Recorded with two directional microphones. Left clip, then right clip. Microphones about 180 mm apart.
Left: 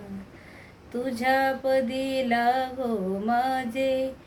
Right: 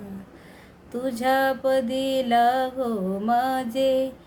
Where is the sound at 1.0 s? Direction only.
20° right (ahead or behind).